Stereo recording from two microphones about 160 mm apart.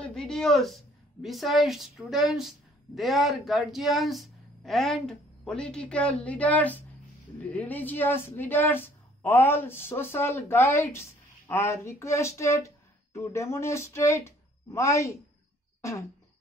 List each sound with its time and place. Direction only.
0.0 s a woman's voice: 5° left (ahead or behind); by 15.1 s 20° left (ahead or behind)
15.8 s throat clearing: 20° left (ahead or behind)